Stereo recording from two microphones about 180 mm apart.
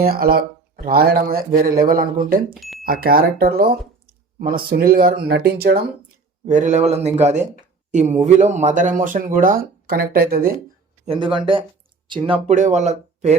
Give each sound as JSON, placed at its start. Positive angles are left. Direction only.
{"t": 0.0, "sound": "speech", "side_deg": -55}
{"t": 2.6, "sound": "a sound", "side_deg": 0}
{"t": 2.8, "sound": "speech", "side_deg": -55}
{"t": 6.4, "sound": "speech", "side_deg": -45}
{"t": 11.0, "sound": "speech", "side_deg": -30}
{"t": 12.5, "sound": "speech", "side_deg": -40}